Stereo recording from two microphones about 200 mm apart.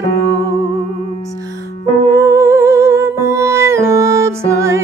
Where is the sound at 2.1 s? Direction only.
15° right (ahead or behind).